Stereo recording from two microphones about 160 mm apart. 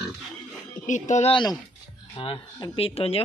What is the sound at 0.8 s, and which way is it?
Speech, 50° left (ahead or behind).